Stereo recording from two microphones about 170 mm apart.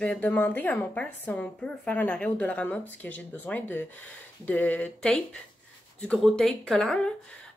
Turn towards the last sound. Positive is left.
turn(degrees=0)  # may be behind; listen again after turning